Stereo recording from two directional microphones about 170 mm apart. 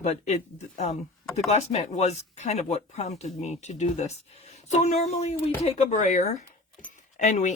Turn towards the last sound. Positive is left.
turn(degrees=45)  # may be behind; listen again after turning